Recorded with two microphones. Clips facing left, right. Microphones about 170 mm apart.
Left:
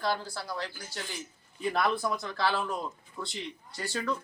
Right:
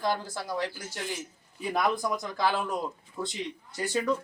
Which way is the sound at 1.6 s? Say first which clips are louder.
Right 1 dB; 15° right (ahead or behind).